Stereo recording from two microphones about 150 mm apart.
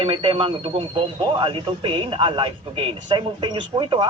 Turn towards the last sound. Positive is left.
turn(degrees=-30)  # may be behind; listen again after turning